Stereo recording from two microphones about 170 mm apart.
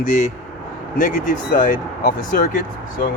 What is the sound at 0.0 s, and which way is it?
Speech, 50° left (ahead or behind).